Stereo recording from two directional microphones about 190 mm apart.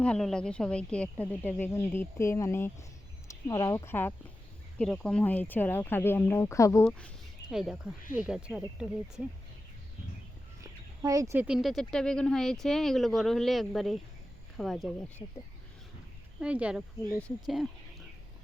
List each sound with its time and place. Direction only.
0.0 s speech: 5° left (ahead or behind)
7.5 s speech: centre (ahead or behind)
11.0 s speech: 15° right (ahead or behind); by 15.1 s centre (ahead or behind)
16.4 s speech: 5° right (ahead or behind)